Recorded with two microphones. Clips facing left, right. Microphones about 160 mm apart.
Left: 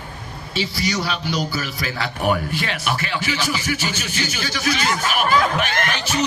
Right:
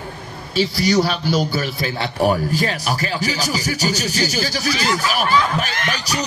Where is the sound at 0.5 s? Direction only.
35° right (ahead or behind).